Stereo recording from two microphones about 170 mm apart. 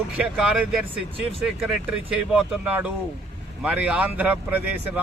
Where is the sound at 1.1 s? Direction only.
35° right (ahead or behind).